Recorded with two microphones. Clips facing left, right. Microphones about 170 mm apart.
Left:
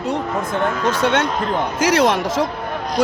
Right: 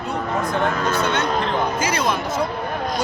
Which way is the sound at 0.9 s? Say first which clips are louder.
Left 3 dB; 90° left.